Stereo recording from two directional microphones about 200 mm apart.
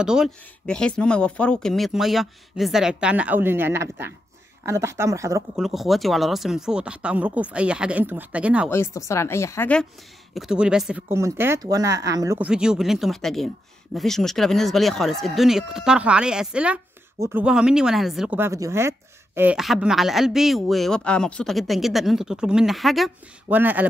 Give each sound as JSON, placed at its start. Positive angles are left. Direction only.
{"t": 0.0, "sound": "speech", "side_deg": -5}
{"t": 5.6, "sound": "speech", "side_deg": 0}
{"t": 8.6, "sound": "speech", "side_deg": 15}
{"t": 10.3, "sound": "speech", "side_deg": -5}